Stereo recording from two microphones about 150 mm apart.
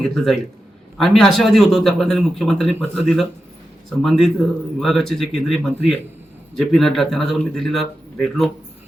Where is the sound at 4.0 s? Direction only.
Centre (ahead or behind).